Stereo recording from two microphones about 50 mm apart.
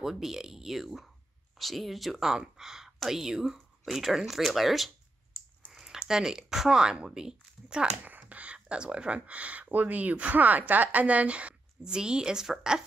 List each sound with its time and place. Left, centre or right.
0.0 s speech: centre
8.1 s a sound: right
8.5 s speech: centre